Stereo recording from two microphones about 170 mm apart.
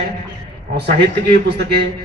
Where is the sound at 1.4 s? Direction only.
85° right.